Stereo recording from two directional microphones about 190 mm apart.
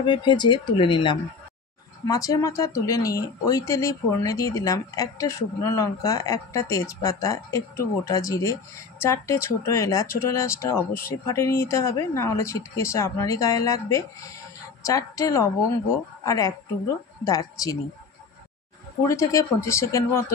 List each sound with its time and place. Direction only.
0.0 s speech: 25° left (ahead or behind)
19.0 s speech: 15° left (ahead or behind)